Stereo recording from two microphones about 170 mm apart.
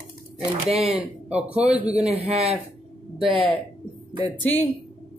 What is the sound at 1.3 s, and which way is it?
Speech, 5° right (ahead or behind).